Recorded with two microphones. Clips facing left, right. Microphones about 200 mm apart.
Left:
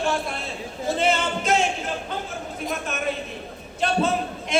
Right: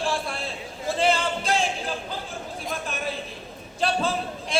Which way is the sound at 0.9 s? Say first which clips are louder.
Right 1 dB; 35° right (ahead or behind).